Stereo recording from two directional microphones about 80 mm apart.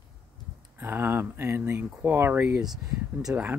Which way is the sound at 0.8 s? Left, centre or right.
Right.